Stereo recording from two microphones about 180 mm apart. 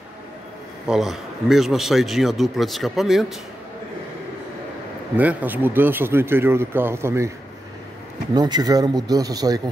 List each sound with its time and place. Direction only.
0.8 s speech: centre (ahead or behind)
5.1 s speech: 10° right (ahead or behind)
8.4 s a man's voice: 20° right (ahead or behind)